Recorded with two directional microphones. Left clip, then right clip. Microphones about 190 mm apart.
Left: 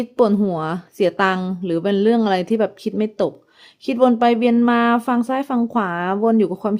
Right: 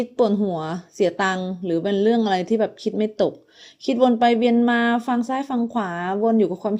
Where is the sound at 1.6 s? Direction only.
20° left (ahead or behind).